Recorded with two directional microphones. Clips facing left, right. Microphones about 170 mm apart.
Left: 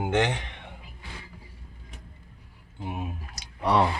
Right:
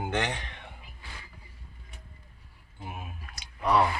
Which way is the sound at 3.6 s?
25° left (ahead or behind).